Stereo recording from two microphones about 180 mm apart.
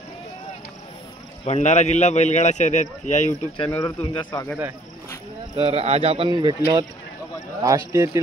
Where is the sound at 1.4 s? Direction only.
40° left (ahead or behind).